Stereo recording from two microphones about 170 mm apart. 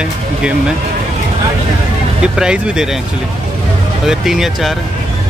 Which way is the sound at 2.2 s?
5° right (ahead or behind).